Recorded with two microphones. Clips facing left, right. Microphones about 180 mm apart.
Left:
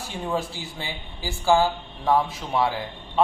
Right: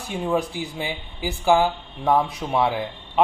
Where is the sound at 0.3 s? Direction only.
20° right (ahead or behind).